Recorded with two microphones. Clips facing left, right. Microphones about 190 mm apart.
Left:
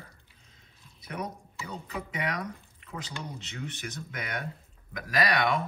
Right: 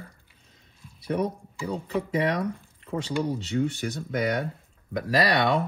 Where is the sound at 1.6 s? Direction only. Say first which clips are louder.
Right 9 dB; 30° right (ahead or behind).